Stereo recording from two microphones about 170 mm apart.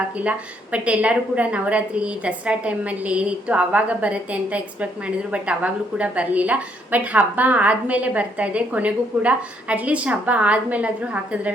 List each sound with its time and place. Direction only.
0.2 s a woman's voice: 5° right (ahead or behind)